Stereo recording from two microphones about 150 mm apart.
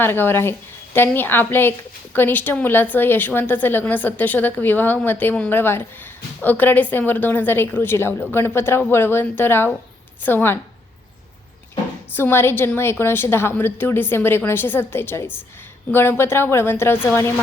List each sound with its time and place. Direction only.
0.0 s a woman's voice: 15° left (ahead or behind)
12.1 s a woman's voice: 15° left (ahead or behind)